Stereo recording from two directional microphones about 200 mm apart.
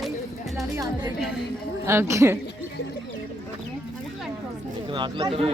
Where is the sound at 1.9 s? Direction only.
15° right (ahead or behind).